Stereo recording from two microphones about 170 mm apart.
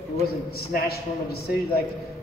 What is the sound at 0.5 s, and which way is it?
A man's voice, 65° left (ahead or behind).